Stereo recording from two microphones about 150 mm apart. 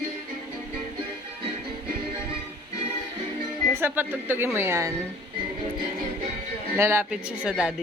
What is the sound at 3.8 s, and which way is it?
Speech, 15° right (ahead or behind).